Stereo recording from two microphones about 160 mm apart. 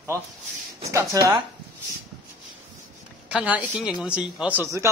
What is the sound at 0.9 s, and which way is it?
Speech, 20° right (ahead or behind).